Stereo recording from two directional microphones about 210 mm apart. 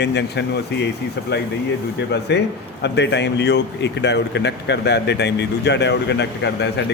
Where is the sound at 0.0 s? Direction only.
55° left (ahead or behind).